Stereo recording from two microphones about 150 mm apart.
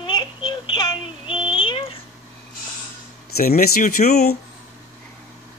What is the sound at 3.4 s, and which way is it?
Speech, 80° left.